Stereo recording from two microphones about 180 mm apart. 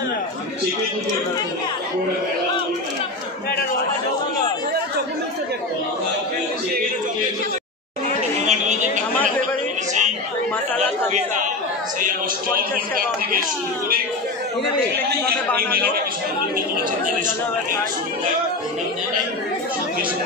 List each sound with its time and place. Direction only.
8.4 s chatter: 40° right (ahead or behind)
12.5 s a sound: 55° right (ahead or behind)
15.0 s a man's voice: 60° right (ahead or behind)